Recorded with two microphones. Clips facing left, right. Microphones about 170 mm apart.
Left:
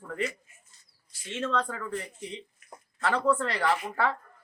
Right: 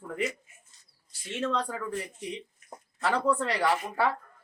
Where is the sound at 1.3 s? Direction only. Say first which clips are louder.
Even; 15° right (ahead or behind).